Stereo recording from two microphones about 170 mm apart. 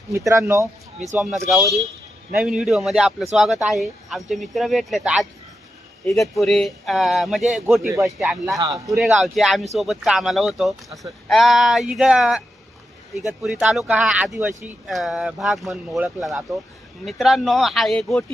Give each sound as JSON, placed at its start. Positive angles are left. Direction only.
{"t": 0.1, "sound": "speech", "side_deg": -20}
{"t": 2.3, "sound": "speech", "side_deg": -5}